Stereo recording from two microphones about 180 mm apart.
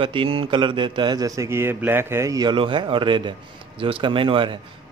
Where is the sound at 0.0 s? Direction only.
30° right (ahead or behind).